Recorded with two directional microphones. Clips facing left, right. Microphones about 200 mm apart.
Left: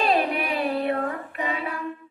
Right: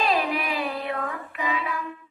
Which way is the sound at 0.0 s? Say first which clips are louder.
Left 2 dB; 50° left (ahead or behind).